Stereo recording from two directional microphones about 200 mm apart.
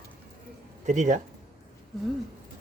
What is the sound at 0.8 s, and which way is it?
Speech, 40° right (ahead or behind).